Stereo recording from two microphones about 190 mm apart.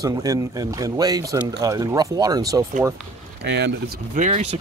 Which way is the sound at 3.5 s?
65° right (ahead or behind).